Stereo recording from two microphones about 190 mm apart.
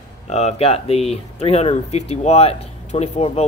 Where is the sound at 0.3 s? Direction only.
35° left (ahead or behind).